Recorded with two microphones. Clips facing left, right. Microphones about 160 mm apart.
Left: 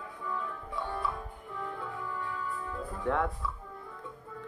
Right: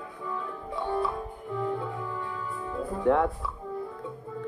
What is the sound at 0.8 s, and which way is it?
Music, 30° right (ahead or behind).